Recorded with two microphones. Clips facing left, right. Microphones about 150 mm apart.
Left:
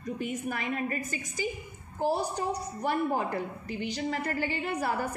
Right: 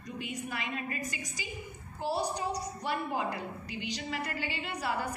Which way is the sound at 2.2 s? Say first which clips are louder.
Left 2 dB; 55° left (ahead or behind).